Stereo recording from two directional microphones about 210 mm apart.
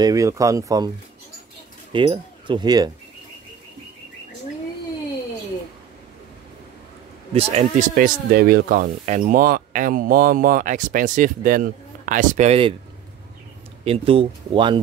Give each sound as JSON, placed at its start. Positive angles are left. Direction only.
{"t": 0.0, "sound": "speech", "side_deg": -15}
{"t": 7.3, "sound": "speech", "side_deg": -35}
{"t": 13.8, "sound": "speech", "side_deg": -25}